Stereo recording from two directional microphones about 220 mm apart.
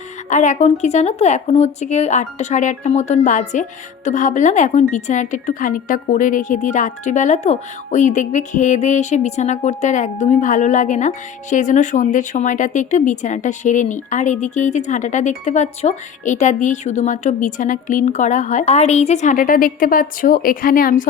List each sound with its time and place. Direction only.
0.3 s speech: 35° left (ahead or behind)